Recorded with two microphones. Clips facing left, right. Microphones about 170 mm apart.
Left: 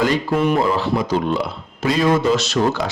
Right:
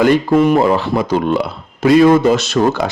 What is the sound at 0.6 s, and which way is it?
Speech, 60° right (ahead or behind).